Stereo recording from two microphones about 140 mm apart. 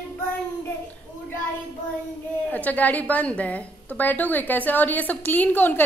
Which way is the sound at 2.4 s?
10° left (ahead or behind).